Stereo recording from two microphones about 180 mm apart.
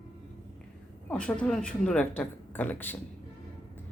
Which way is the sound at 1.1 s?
5° left (ahead or behind).